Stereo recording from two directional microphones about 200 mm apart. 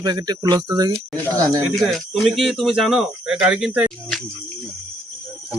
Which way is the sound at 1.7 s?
Centre (ahead or behind).